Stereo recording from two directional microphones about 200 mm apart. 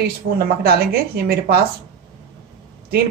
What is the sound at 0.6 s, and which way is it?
Speech, 50° right (ahead or behind).